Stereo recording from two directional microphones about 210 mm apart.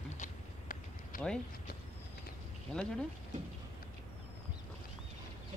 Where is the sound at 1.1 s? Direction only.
40° left (ahead or behind).